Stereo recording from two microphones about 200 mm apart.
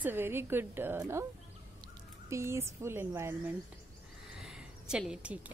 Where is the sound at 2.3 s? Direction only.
15° right (ahead or behind).